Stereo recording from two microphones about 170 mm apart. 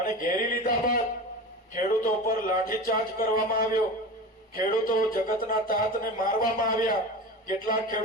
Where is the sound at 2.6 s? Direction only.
60° left (ahead or behind).